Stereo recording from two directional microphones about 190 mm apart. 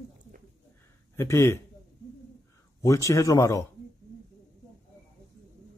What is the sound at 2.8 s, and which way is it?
Speech, 15° left (ahead or behind).